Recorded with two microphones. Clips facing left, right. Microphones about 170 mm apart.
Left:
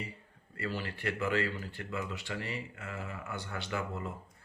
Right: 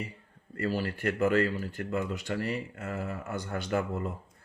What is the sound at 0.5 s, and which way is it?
Speech, 45° right (ahead or behind).